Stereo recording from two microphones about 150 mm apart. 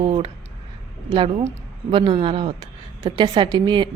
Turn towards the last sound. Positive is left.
turn(degrees=-30)  # may be behind; listen again after turning